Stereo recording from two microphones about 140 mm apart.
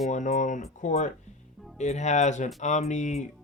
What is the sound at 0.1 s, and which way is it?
Speech, 60° left (ahead or behind).